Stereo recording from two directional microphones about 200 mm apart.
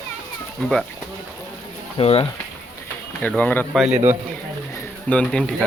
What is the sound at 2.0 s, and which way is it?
Speech, 30° left (ahead or behind).